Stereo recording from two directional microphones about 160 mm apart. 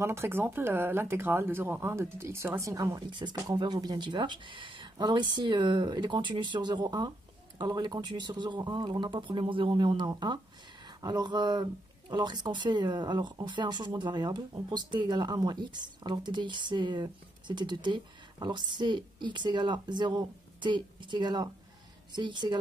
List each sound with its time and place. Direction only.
0.0 s speech: 15° right (ahead or behind)